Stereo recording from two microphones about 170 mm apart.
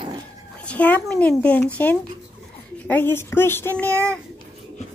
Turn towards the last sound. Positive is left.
turn(degrees=10)  # may be behind; listen again after turning